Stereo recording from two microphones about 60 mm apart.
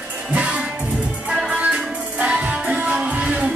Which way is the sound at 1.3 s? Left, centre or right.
Centre.